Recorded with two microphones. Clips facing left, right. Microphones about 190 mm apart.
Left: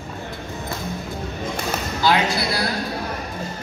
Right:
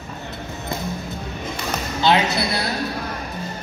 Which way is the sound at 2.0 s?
25° right (ahead or behind).